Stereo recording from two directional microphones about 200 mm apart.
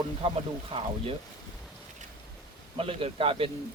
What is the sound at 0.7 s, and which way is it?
Speech, 25° right (ahead or behind).